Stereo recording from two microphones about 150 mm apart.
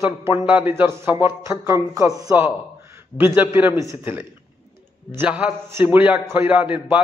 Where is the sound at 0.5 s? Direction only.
10° right (ahead or behind).